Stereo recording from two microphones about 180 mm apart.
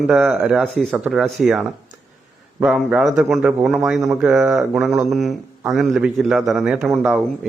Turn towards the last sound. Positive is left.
turn(degrees=0)  # may be behind; listen again after turning